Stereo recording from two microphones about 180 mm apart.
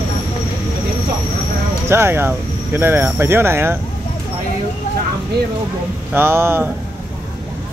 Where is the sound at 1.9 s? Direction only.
15° right (ahead or behind).